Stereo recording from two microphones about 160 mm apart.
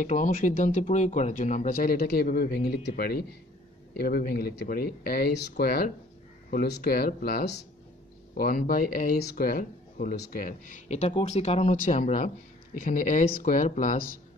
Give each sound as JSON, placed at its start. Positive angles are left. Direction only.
{"t": 0.0, "sound": "speech", "side_deg": 50}
{"t": 8.4, "sound": "speech", "side_deg": 60}